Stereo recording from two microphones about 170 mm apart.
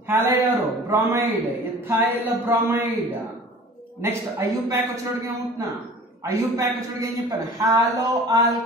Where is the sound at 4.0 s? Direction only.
15° right (ahead or behind).